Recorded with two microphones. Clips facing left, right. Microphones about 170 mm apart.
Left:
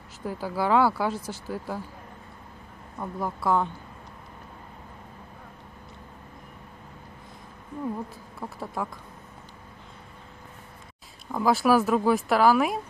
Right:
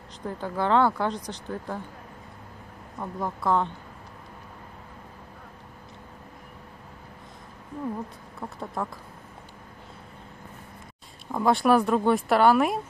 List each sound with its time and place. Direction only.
0.2 s speech: 5° left (ahead or behind)
3.0 s speech: 5° left (ahead or behind)
8.4 s speech: centre (ahead or behind)
11.3 s speech: centre (ahead or behind)